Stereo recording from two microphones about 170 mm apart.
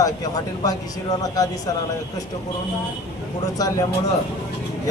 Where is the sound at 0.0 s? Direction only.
20° left (ahead or behind).